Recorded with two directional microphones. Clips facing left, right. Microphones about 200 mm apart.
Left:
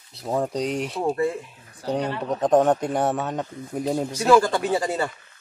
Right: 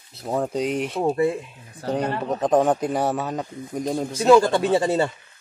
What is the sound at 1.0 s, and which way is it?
Speech, 20° right (ahead or behind).